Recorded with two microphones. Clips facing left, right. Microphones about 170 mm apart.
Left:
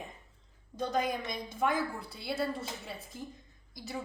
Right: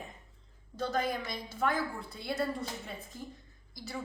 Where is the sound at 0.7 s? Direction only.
10° left (ahead or behind).